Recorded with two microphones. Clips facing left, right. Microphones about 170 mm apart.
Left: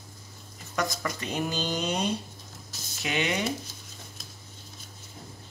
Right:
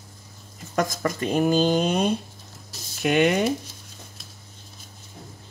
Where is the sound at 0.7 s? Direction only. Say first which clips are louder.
Right 6 dB; 50° right (ahead or behind).